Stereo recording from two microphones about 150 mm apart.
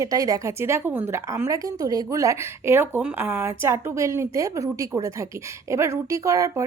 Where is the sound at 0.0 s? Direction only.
20° right (ahead or behind).